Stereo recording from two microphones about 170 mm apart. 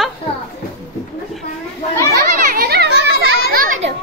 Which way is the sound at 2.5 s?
65° right (ahead or behind).